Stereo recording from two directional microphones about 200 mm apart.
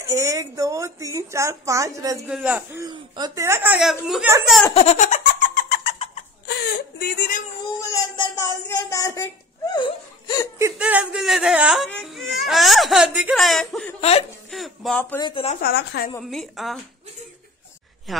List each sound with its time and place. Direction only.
0.1 s a woman's voice: 15° right (ahead or behind)
4.7 s giggle: 35° left (ahead or behind)
6.4 s whimper: 55° left (ahead or behind)
7.9 s speech: 15° left (ahead or behind)
10.6 s speech: 5° right (ahead or behind)
15.1 s speech: 25° left (ahead or behind)
15.6 s a woman's voice: 55° left (ahead or behind)
16.2 s speech: centre (ahead or behind)